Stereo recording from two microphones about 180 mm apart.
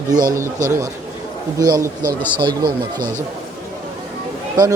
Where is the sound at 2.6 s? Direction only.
50° right (ahead or behind).